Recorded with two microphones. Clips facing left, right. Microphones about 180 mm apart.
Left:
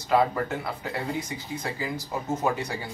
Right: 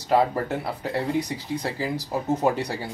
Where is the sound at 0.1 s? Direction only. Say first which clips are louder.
Right 2 dB; 35° right (ahead or behind).